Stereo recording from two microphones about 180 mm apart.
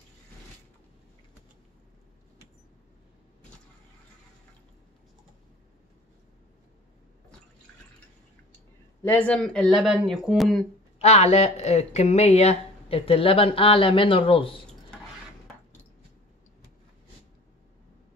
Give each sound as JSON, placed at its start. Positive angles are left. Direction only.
{"t": 9.0, "sound": "speech", "side_deg": 10}
{"t": 11.0, "sound": "speech", "side_deg": 35}